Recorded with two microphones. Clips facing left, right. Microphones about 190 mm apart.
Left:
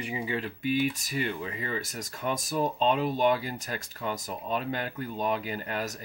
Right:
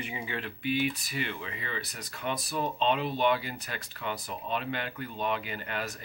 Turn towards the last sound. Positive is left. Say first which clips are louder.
# left 3 dB
turn(degrees=40)  # may be behind; listen again after turning